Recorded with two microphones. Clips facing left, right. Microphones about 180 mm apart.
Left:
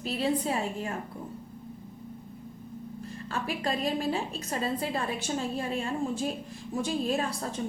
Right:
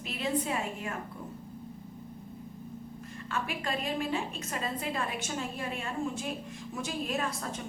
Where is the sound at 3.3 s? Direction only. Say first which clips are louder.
Left 3 dB; 35° left (ahead or behind).